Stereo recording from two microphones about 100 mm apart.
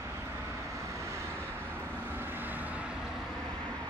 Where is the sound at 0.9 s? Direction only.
30° right (ahead or behind).